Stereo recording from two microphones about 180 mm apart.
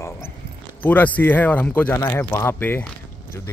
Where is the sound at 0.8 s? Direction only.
10° left (ahead or behind).